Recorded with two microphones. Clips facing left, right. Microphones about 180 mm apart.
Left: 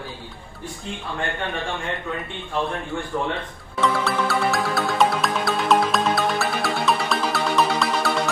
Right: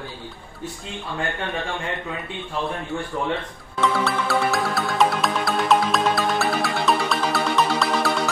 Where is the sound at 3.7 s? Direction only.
Centre (ahead or behind).